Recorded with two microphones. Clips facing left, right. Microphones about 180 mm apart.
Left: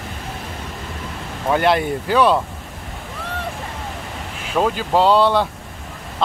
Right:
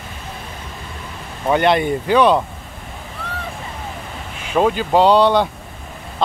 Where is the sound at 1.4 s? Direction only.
Centre (ahead or behind).